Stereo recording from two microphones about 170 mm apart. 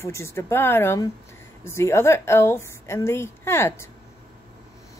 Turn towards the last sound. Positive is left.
turn(degrees=15)  # may be behind; listen again after turning